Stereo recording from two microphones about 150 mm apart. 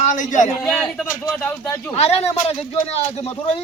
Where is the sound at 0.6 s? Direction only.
Centre (ahead or behind).